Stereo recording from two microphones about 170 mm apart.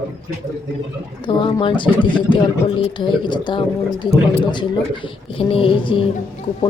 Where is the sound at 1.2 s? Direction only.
30° left (ahead or behind).